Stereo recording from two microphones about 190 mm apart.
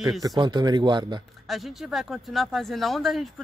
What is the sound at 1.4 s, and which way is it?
Speech, centre (ahead or behind).